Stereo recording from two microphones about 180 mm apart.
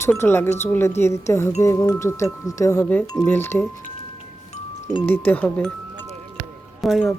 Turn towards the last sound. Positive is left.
turn(degrees=0)  # may be behind; listen again after turning